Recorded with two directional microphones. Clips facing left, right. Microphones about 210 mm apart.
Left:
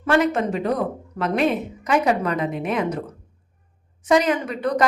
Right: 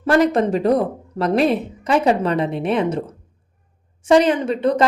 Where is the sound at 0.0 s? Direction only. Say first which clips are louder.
Right 4 dB; 35° right (ahead or behind).